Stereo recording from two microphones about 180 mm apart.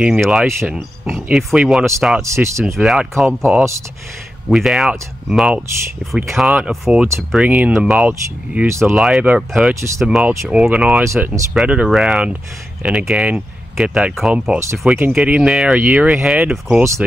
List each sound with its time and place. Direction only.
0.0 s speech: 5° right (ahead or behind)
8.9 s speech: centre (ahead or behind)